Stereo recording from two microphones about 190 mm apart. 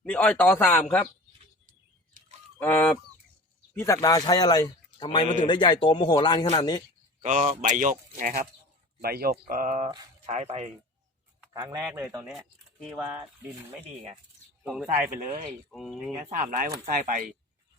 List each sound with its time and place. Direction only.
0.0 s speech: 10° left (ahead or behind)
2.6 s speech: 10° left (ahead or behind)
7.2 s speech: 40° right (ahead or behind)
11.9 s speech: 10° right (ahead or behind)
14.6 s speech: 5° right (ahead or behind)
15.3 s speech: 40° right (ahead or behind)
15.7 s speech: centre (ahead or behind)
16.2 s speech: 45° right (ahead or behind)